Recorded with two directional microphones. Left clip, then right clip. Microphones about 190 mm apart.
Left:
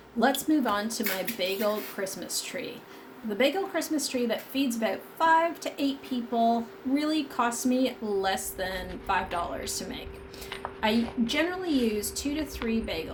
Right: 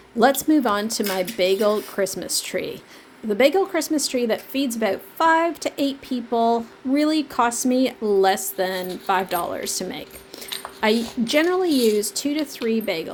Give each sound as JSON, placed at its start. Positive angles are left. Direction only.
{"t": 0.2, "sound": "a woman's voice", "side_deg": -55}